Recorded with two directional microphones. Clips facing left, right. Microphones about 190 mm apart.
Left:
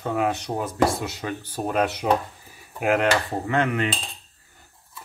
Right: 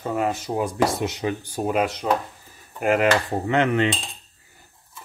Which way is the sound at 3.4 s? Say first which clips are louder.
Right 4 dB; 25° right (ahead or behind).